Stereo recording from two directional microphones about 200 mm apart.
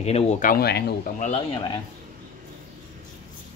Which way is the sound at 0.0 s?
30° left (ahead or behind).